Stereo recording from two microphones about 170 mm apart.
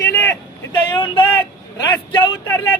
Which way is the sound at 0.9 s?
30° left (ahead or behind).